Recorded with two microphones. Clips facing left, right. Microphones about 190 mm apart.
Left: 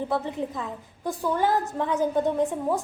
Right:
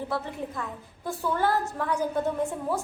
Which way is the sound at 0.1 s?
20° left (ahead or behind).